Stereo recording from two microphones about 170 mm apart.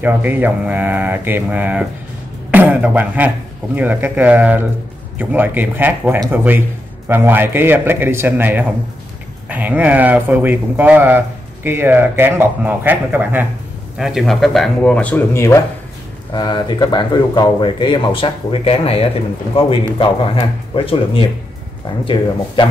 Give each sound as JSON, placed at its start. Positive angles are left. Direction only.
{"t": 0.0, "sound": "speech", "side_deg": -10}